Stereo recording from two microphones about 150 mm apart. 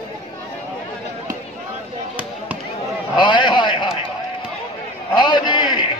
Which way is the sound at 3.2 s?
30° left (ahead or behind).